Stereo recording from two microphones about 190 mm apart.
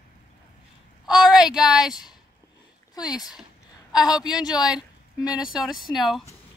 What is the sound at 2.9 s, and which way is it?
Speech, 20° left (ahead or behind).